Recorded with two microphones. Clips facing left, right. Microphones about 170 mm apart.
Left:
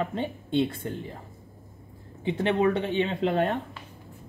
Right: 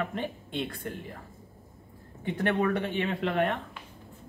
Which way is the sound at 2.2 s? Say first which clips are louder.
Left 4 dB; 20° left (ahead or behind).